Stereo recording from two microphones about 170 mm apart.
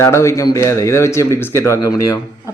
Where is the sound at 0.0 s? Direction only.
15° left (ahead or behind).